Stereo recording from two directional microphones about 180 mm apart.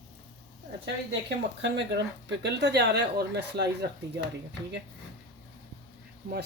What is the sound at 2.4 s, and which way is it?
Speech, 75° right (ahead or behind).